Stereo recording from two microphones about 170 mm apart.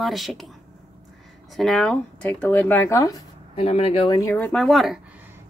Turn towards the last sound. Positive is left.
turn(degrees=0)  # may be behind; listen again after turning